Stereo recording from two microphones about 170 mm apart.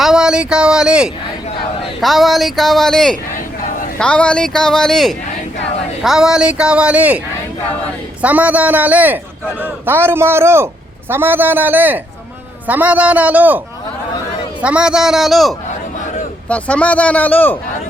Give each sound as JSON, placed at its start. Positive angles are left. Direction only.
{"t": 0.0, "sound": "a woman's voice", "side_deg": -5}
{"t": 8.2, "sound": "a man's voice", "side_deg": -10}
{"t": 14.6, "sound": "a woman's voice", "side_deg": -5}